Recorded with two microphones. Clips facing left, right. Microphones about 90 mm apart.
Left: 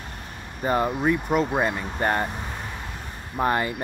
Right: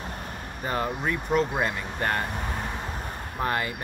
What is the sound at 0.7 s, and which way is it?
Speech, 25° left (ahead or behind).